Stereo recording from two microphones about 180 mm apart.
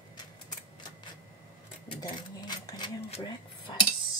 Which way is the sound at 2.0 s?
20° left (ahead or behind).